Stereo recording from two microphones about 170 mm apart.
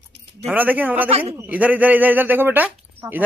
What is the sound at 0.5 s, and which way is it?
Speech, 10° right (ahead or behind).